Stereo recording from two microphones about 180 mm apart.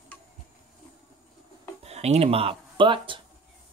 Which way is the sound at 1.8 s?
35° right (ahead or behind).